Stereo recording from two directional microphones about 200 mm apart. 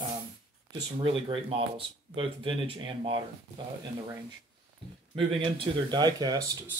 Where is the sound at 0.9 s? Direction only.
25° right (ahead or behind).